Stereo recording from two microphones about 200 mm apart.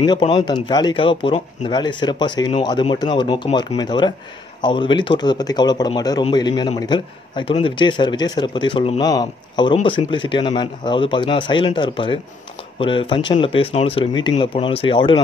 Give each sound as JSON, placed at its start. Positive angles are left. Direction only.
{"t": 0.0, "sound": "speech", "side_deg": 20}